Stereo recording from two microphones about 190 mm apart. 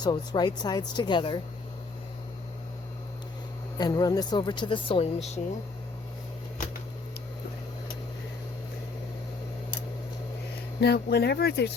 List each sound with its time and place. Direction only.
0.0 s speech: 20° left (ahead or behind)
3.8 s speech: 20° left (ahead or behind)
10.8 s speech: 60° left (ahead or behind)